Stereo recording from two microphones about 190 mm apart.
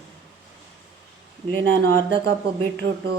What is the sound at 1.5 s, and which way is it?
Speech, 75° right (ahead or behind).